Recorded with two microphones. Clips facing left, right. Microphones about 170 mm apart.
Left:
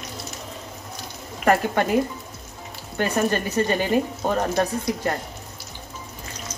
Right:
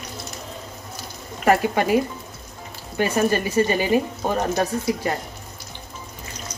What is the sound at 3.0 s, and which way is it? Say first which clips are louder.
A woman's voice: right 2 dB; 5° right (ahead or behind).